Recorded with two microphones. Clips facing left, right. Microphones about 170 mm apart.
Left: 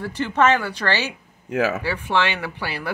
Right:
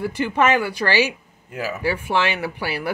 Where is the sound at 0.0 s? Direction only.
10° right (ahead or behind).